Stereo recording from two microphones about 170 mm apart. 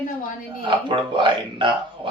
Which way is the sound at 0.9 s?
25° right (ahead or behind).